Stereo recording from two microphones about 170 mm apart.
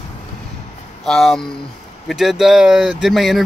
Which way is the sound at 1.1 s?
Centre (ahead or behind).